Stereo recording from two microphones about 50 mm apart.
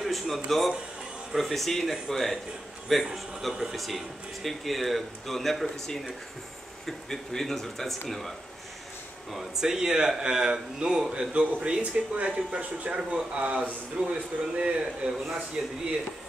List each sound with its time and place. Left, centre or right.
0.0 s speech: centre
9.3 s speech: centre
11.5 s speech: right